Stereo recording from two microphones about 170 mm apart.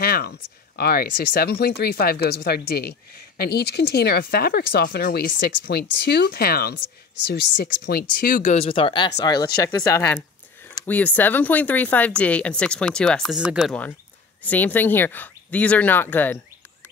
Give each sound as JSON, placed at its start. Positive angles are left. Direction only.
{"t": 0.0, "sound": "speech", "side_deg": 60}
{"t": 8.6, "sound": "speech", "side_deg": 30}
{"t": 14.4, "sound": "speech", "side_deg": 10}